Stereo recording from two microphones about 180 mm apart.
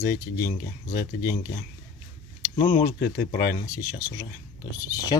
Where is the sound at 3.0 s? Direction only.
55° left (ahead or behind).